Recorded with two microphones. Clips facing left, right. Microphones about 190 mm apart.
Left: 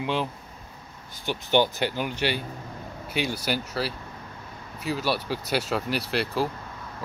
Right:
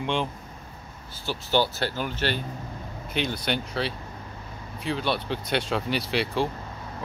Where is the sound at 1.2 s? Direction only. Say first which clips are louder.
Left 2 dB; 15° left (ahead or behind); by 6.5 s centre (ahead or behind).